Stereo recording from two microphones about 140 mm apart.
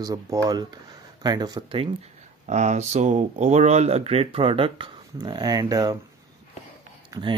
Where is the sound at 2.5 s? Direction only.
55° right (ahead or behind); by 6.0 s 25° right (ahead or behind).